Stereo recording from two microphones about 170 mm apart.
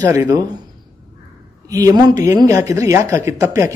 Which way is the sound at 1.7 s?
20° right (ahead or behind).